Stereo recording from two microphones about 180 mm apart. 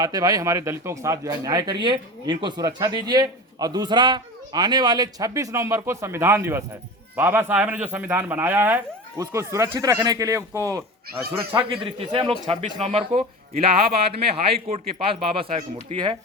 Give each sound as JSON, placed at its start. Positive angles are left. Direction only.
{"t": 0.0, "sound": "speech", "side_deg": -20}
{"t": 11.7, "sound": "a man's voice", "side_deg": -30}